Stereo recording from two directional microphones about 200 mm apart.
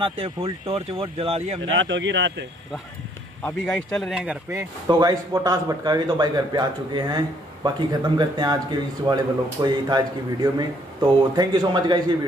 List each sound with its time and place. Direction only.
0.0 s speech: 25° right (ahead or behind)
1.7 s speech: 70° right (ahead or behind)
3.4 s speech: 5° left (ahead or behind); by 12.0 s 20° right (ahead or behind)